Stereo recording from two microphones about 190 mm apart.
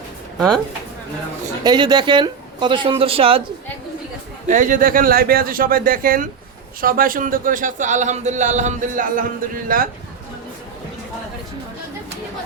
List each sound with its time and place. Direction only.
0.3 s speech: centre (ahead or behind)
1.6 s speech: 20° right (ahead or behind)
4.4 s speech: 40° right (ahead or behind)